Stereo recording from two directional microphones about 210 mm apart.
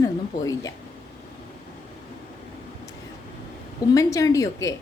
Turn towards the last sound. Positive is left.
turn(degrees=15)  # may be behind; listen again after turning